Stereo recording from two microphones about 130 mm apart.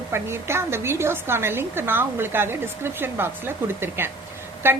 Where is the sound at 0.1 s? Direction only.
20° right (ahead or behind).